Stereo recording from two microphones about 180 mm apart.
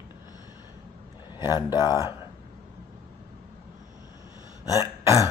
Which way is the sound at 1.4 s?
20° left (ahead or behind).